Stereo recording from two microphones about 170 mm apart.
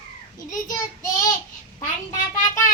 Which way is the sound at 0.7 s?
25° left (ahead or behind).